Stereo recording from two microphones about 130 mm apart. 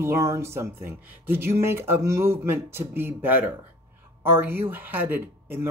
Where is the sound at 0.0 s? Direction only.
20° right (ahead or behind).